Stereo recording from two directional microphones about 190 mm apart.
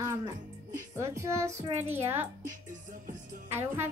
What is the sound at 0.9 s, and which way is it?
Speech, 15° right (ahead or behind).